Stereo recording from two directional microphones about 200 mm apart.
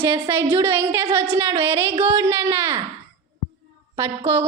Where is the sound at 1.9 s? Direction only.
30° right (ahead or behind).